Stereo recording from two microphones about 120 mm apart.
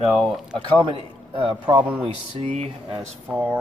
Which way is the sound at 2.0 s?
65° right (ahead or behind).